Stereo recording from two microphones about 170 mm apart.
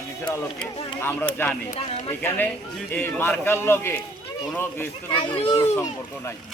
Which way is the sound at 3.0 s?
10° left (ahead or behind).